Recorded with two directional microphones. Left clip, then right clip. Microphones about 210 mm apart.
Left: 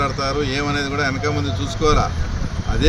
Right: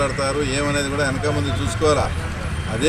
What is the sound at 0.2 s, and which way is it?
Speech, centre (ahead or behind).